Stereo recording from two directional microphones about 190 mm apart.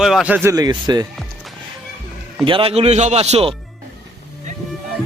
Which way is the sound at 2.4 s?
30° right (ahead or behind).